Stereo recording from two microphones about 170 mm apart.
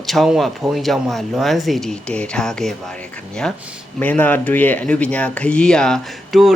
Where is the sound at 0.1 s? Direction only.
Centre (ahead or behind).